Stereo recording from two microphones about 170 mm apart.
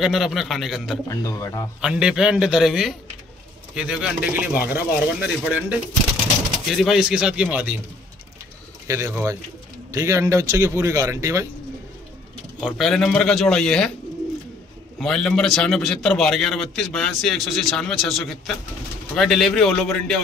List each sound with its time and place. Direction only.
0.0 s a man's voice: centre (ahead or behind)
1.0 s speech: 20° left (ahead or behind)
1.8 s a man's voice: 5° right (ahead or behind)
8.8 s speech: 20° right (ahead or behind)
12.5 s a man's voice: centre (ahead or behind)
15.0 s a man's voice: 5° left (ahead or behind)